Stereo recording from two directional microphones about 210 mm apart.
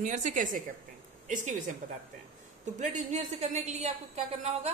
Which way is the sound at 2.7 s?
35° right (ahead or behind).